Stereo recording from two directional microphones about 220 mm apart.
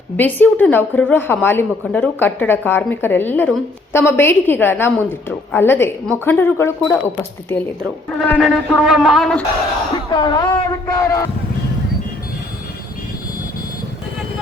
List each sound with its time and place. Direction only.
0.2 s a woman's voice: 10° left (ahead or behind)
8.2 s speech: 5° left (ahead or behind)
10.1 s a woman's voice: 20° left (ahead or behind)